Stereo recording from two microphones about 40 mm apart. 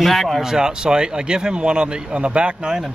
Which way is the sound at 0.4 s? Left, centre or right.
Centre.